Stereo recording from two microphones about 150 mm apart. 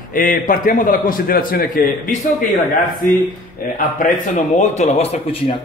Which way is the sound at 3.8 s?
60° left (ahead or behind).